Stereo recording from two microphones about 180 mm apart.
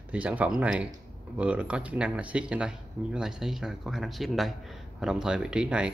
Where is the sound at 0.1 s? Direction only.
10° right (ahead or behind).